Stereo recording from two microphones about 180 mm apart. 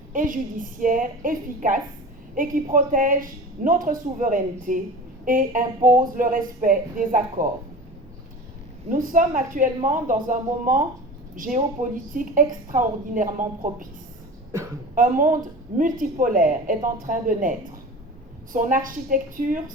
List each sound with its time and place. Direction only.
0.1 s a woman's voice: 45° right (ahead or behind)
8.9 s speech: 50° right (ahead or behind)
14.9 s speech: 45° right (ahead or behind)
18.5 s speech: 45° right (ahead or behind)